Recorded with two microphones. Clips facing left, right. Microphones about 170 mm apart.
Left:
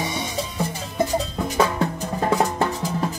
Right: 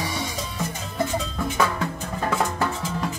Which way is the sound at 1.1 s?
35° left (ahead or behind).